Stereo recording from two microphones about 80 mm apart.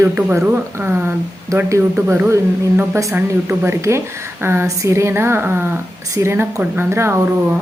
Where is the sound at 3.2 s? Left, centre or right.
Right.